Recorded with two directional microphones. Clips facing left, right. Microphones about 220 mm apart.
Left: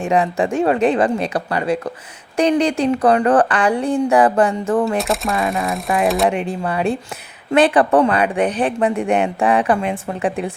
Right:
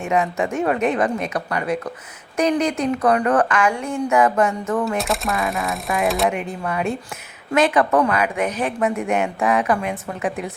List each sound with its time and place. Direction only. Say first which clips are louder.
0.0 s speech: left 3 dB; 30° left (ahead or behind)
4.9 s speech: left 3 dB; centre (ahead or behind)
6.2 s speech: left 3 dB; 30° left (ahead or behind)